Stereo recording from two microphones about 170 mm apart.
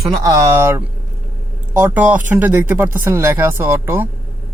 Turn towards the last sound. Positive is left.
turn(degrees=-15)  # may be behind; listen again after turning